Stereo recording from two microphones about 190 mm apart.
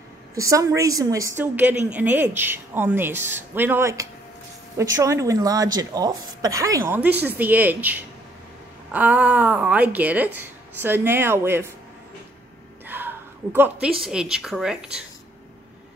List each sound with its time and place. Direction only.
0.3 s speech: 15° right (ahead or behind)
12.8 s a sound: 10° right (ahead or behind)
14.0 s speech: 5° right (ahead or behind)